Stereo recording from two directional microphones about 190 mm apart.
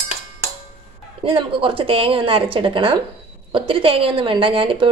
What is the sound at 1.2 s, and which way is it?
Speech, 25° right (ahead or behind).